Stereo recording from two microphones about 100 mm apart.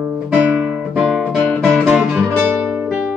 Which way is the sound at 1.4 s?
10° left (ahead or behind).